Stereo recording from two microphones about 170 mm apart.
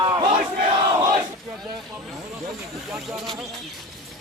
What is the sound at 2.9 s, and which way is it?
Speech, centre (ahead or behind).